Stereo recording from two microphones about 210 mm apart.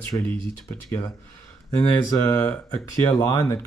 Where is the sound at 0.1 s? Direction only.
10° left (ahead or behind).